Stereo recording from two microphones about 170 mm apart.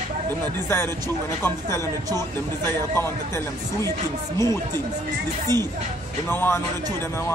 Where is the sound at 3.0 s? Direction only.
15° left (ahead or behind).